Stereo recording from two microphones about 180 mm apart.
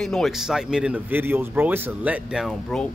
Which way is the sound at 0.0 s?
Centre (ahead or behind).